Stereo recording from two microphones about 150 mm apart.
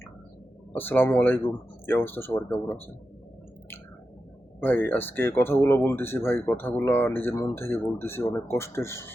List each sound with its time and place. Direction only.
0.7 s speech: 15° left (ahead or behind)
4.6 s speech: 15° left (ahead or behind)